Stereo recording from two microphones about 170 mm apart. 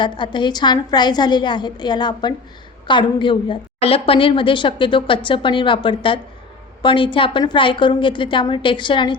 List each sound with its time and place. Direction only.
0.0 s a woman's voice: 25° left (ahead or behind)